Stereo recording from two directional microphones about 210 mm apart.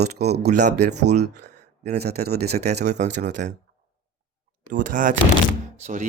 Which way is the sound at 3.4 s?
35° right (ahead or behind).